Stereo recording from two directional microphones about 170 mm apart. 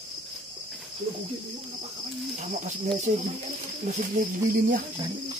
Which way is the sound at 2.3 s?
45° right (ahead or behind).